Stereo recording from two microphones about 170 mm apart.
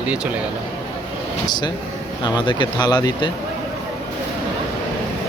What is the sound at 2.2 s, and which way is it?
Speech, 25° left (ahead or behind).